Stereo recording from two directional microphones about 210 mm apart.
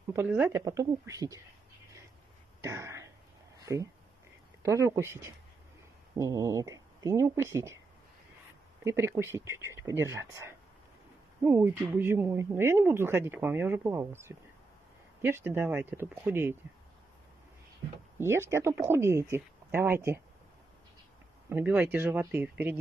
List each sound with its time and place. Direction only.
0.1 s speech: 10° right (ahead or behind)
2.6 s a sound: 15° right (ahead or behind)
3.6 s speech: 15° right (ahead or behind)
8.8 s speech: 10° right (ahead or behind)
18.2 s speech: 10° right (ahead or behind)
21.5 s speech: 10° right (ahead or behind)